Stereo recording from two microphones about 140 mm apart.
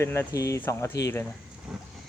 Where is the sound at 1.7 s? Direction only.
5° right (ahead or behind).